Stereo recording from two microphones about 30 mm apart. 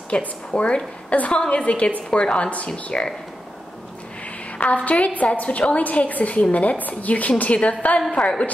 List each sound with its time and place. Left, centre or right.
0.1 s a woman's voice: left
2.1 s a woman's voice: left
4.5 s a woman's voice: left
5.9 s a woman's voice: left
6.5 s a woman's voice: left
6.8 s a woman's voice: left
8.1 s a woman's voice: left